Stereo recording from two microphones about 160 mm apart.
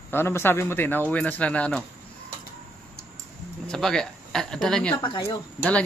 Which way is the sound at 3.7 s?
5° left (ahead or behind).